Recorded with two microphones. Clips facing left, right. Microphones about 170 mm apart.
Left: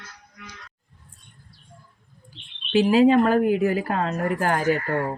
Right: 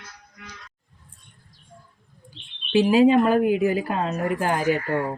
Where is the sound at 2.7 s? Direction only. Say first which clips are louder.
Even; 15° right (ahead or behind).